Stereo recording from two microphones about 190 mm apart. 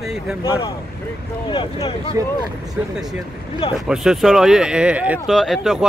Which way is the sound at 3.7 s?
Centre (ahead or behind).